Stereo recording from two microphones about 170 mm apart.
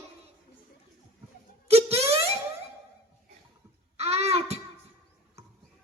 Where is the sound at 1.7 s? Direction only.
35° right (ahead or behind).